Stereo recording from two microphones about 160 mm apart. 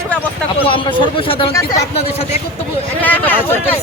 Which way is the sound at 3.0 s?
10° left (ahead or behind).